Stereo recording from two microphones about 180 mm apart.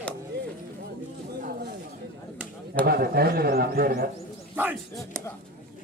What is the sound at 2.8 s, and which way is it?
A man's voice, 60° right (ahead or behind).